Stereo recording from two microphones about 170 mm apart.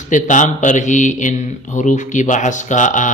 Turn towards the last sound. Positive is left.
turn(degrees=45)  # may be behind; listen again after turning